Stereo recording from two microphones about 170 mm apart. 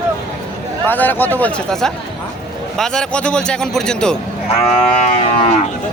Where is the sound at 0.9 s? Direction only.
10° left (ahead or behind).